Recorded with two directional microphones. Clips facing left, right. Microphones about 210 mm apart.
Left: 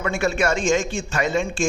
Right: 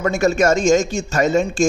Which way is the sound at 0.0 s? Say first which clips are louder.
Right 6 dB; 40° right (ahead or behind).